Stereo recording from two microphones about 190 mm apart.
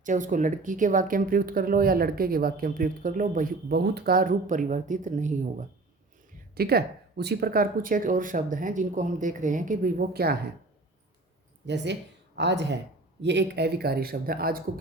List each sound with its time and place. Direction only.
0.0 s speech: 40° right (ahead or behind)
6.5 s speech: 55° right (ahead or behind)
11.6 s speech: 65° right (ahead or behind); by 14.6 s 50° right (ahead or behind)